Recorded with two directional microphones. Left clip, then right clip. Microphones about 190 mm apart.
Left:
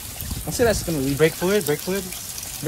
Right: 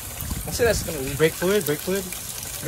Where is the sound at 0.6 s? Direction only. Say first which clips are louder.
Left 1 dB; 35° left (ahead or behind).